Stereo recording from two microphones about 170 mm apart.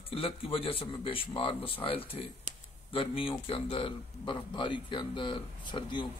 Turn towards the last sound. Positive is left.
turn(degrees=30)  # may be behind; listen again after turning